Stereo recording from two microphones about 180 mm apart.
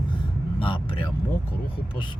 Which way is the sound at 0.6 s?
30° left (ahead or behind).